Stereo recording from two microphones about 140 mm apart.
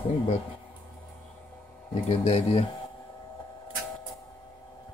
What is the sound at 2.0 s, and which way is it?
Speech, 50° left (ahead or behind).